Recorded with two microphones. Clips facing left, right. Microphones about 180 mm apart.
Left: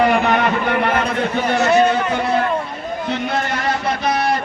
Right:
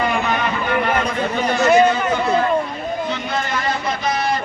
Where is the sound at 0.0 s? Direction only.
65° left (ahead or behind).